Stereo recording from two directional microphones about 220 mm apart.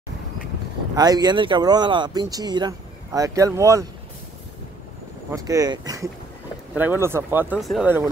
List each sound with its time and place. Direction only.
0.9 s speech: 15° right (ahead or behind)
5.3 s speech: 15° right (ahead or behind)